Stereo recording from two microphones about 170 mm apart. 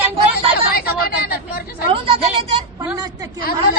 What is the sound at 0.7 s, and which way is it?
Speech, 65° left (ahead or behind).